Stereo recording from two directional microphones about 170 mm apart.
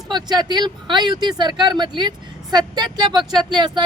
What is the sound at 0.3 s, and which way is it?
A woman's voice, 25° right (ahead or behind).